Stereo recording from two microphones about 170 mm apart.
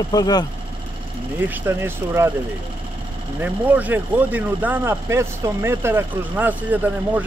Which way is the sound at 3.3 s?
10° right (ahead or behind).